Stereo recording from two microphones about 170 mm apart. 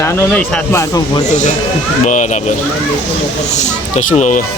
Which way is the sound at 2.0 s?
45° left (ahead or behind).